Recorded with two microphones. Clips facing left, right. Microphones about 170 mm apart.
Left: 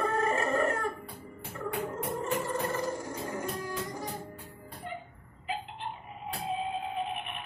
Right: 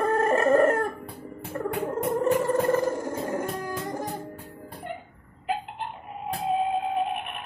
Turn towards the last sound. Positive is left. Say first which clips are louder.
# right 7 dB
turn(degrees=-60)  # may be behind; listen again after turning